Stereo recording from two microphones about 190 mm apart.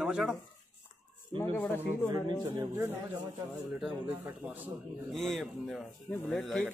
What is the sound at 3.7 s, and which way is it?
Speech, 5° right (ahead or behind).